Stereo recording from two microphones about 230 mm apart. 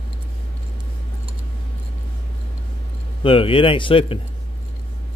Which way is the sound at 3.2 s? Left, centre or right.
Left.